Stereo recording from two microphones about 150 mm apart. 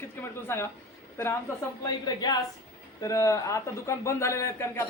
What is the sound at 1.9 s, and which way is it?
A man's voice, 25° left (ahead or behind).